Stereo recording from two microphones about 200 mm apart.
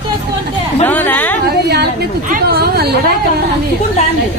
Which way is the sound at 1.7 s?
50° right (ahead or behind).